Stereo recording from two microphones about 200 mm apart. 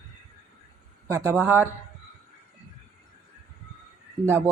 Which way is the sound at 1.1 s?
15° right (ahead or behind).